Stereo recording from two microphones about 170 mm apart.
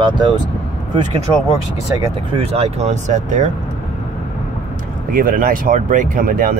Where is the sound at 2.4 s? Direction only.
35° right (ahead or behind).